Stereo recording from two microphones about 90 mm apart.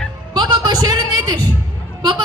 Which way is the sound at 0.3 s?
55° right (ahead or behind).